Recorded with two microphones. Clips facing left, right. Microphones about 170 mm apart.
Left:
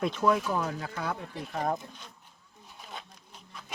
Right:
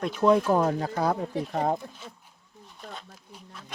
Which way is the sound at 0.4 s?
40° right (ahead or behind).